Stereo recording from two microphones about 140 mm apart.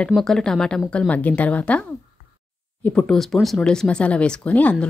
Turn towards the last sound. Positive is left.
turn(degrees=10)  # may be behind; listen again after turning